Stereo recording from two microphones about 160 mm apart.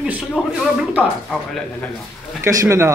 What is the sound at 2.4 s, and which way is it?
Speech, 15° right (ahead or behind).